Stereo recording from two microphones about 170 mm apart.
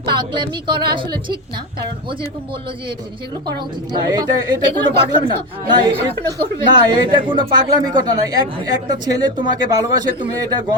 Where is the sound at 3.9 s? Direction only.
25° right (ahead or behind).